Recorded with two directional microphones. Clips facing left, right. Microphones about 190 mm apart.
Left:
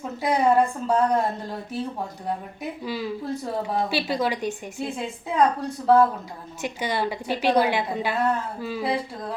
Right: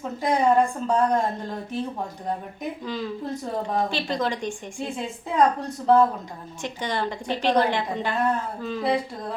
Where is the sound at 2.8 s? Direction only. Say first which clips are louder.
Left 2 dB; 10° left (ahead or behind).